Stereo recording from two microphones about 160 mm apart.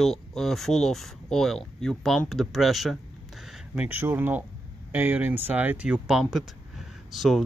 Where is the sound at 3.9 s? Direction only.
10° right (ahead or behind).